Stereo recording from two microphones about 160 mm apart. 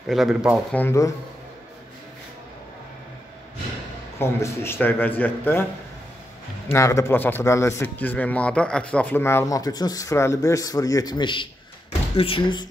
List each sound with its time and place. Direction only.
0.1 s speech: centre (ahead or behind)
0.7 s a man's voice: 15° left (ahead or behind)
4.2 s a man's voice: 15° left (ahead or behind)
6.7 s a man's voice: 20° left (ahead or behind)